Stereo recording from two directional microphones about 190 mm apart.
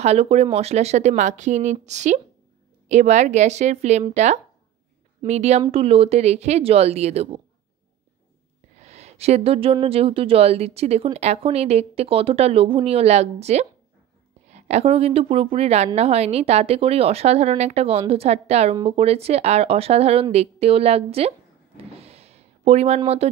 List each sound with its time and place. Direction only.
0.0 s a woman's voice: 35° right (ahead or behind)
8.7 s a woman's voice: 35° right (ahead or behind)
21.9 s a sound: 30° right (ahead or behind)